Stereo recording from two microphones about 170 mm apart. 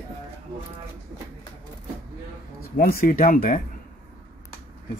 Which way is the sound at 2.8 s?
60° left (ahead or behind).